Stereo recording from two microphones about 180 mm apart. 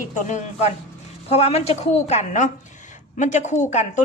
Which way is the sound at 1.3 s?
35° left (ahead or behind).